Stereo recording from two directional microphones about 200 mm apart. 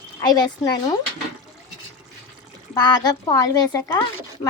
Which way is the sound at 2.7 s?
20° left (ahead or behind).